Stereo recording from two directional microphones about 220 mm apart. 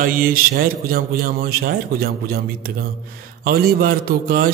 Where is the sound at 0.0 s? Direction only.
40° right (ahead or behind).